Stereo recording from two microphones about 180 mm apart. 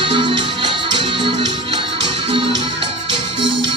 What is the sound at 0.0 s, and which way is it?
Music, 30° right (ahead or behind).